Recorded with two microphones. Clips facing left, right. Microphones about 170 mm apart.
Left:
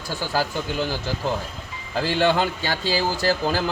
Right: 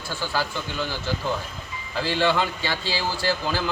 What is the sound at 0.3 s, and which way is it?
Speech, 40° left (ahead or behind).